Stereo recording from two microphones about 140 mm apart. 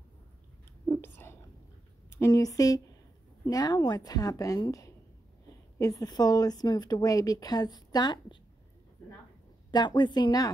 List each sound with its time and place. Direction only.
0.8 s whispering: 15° left (ahead or behind)
2.0 s speech: 20° left (ahead or behind)
9.7 s a woman's voice: 30° left (ahead or behind)